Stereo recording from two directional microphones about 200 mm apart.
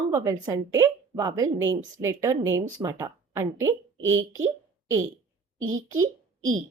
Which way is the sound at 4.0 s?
75° right (ahead or behind).